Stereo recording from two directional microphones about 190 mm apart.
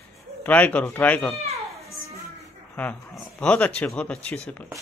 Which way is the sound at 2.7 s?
10° left (ahead or behind).